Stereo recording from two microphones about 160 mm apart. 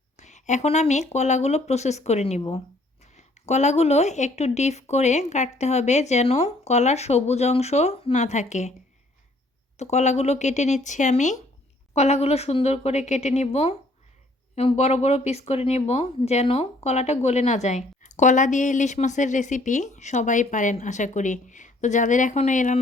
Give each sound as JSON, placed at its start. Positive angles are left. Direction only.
{"t": 0.2, "sound": "speech", "side_deg": 45}
{"t": 9.7, "sound": "speech", "side_deg": 45}